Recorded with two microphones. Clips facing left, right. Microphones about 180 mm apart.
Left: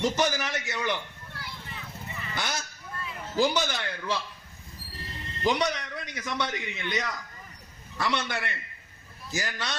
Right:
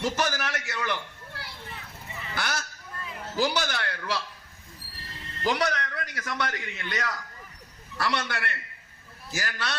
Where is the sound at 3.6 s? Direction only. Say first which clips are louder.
Even; 15° left (ahead or behind).